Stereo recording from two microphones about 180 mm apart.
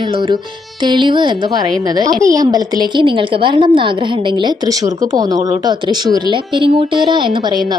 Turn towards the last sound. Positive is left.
turn(degrees=-25)  # may be behind; listen again after turning